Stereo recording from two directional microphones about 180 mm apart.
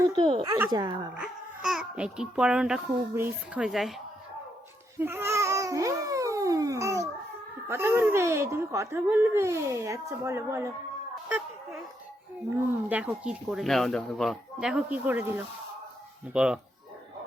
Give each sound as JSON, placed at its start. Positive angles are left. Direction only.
{"t": 0.0, "sound": "speech", "side_deg": -25}
{"t": 1.1, "sound": "speech", "side_deg": -5}
{"t": 4.9, "sound": "babbling", "side_deg": -15}
{"t": 7.7, "sound": "speech", "side_deg": -10}
{"t": 12.9, "sound": "speech", "side_deg": -5}